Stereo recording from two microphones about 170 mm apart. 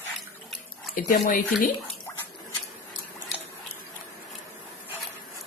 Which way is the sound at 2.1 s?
10° left (ahead or behind).